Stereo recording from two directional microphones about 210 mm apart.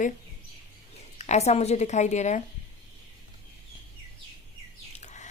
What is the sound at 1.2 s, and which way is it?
Speech, 30° left (ahead or behind).